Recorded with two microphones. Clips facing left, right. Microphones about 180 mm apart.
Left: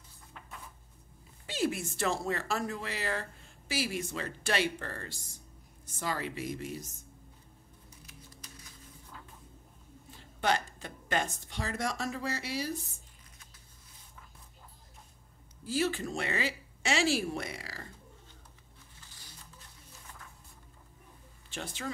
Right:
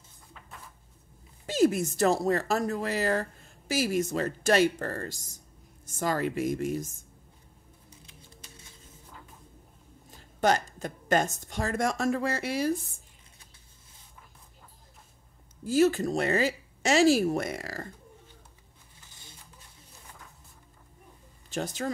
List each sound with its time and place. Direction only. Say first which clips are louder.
1.4 s speech: right 9 dB; 45° right (ahead or behind)
8.0 s music: left 2 dB; 30° right (ahead or behind)
10.1 s speech: right 5 dB; 45° right (ahead or behind)
15.6 s speech: right 8 dB; 45° right (ahead or behind)
21.5 s speech: right 7 dB; 40° right (ahead or behind)